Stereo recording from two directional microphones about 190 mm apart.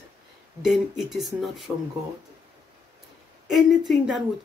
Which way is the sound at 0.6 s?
Centre (ahead or behind).